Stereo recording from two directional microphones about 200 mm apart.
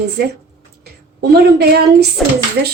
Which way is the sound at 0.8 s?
55° right (ahead or behind).